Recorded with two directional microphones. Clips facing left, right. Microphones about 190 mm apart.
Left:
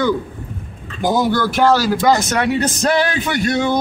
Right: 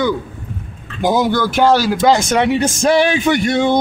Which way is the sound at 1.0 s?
20° right (ahead or behind).